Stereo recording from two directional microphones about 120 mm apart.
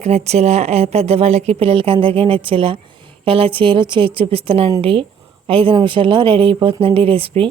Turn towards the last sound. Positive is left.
turn(degrees=-50)  # may be behind; listen again after turning